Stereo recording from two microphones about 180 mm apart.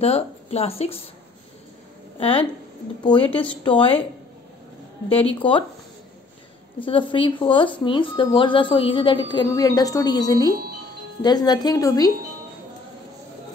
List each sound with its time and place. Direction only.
0.0 s speech: 35° left (ahead or behind)
2.1 s speech: 30° left (ahead or behind)
5.1 s speech: 30° left (ahead or behind)
6.8 s speech: 30° left (ahead or behind)